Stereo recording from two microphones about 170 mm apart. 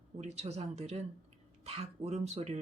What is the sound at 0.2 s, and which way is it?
Speech, 40° right (ahead or behind).